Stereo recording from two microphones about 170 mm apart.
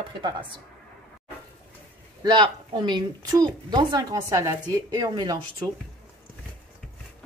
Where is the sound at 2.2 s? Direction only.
25° right (ahead or behind).